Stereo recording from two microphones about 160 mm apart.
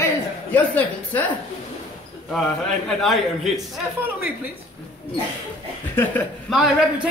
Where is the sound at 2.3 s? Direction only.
Centre (ahead or behind).